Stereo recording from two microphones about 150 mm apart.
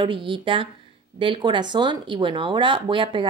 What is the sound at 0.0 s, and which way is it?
Speech, 35° right (ahead or behind).